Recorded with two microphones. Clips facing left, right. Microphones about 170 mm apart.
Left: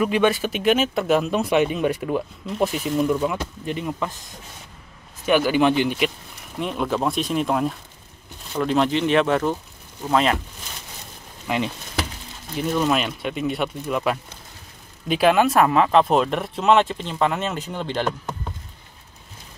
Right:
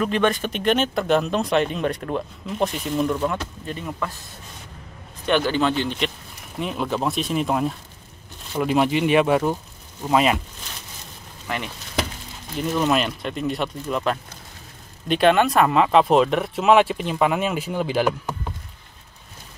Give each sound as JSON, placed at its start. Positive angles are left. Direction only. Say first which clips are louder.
{"t": 0.0, "sound": "speech", "louder": "left 2 dB", "side_deg": 10}
{"t": 3.6, "sound": "a man's voice", "louder": "left 3 dB", "side_deg": 15}
{"t": 11.4, "sound": "a man's voice", "louder": "left 5 dB", "side_deg": 15}
{"t": 12.5, "sound": "speech", "louder": "even", "side_deg": 0}